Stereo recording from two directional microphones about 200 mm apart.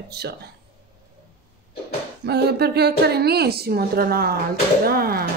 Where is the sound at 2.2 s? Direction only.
55° right (ahead or behind).